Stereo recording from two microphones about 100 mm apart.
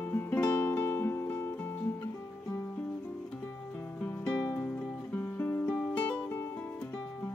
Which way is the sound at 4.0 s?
15° left (ahead or behind).